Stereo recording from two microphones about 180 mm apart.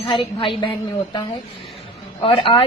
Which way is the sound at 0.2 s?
30° left (ahead or behind).